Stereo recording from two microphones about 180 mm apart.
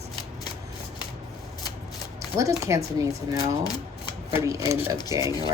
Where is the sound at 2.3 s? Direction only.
15° right (ahead or behind).